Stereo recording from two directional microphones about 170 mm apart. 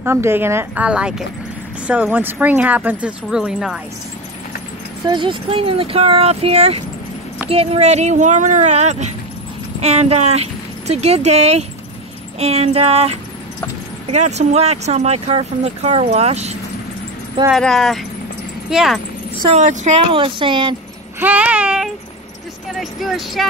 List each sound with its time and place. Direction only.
0.0 s speech: 15° right (ahead or behind)
5.0 s speech: 30° right (ahead or behind)
17.5 s speech: centre (ahead or behind)
19.5 s speech: 45° right (ahead or behind)
20.0 s speech: 30° right (ahead or behind)
21.2 s speech: 10° right (ahead or behind)